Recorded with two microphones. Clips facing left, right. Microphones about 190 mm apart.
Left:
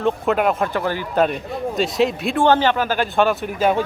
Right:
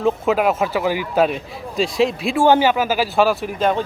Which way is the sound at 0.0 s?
Centre (ahead or behind).